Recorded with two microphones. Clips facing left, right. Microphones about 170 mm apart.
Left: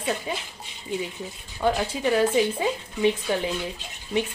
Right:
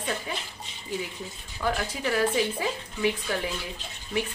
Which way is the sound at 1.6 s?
25° left (ahead or behind).